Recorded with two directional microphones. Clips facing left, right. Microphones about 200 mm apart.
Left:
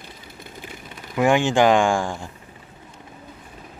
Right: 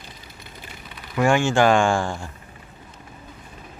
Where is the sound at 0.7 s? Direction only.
45° left (ahead or behind).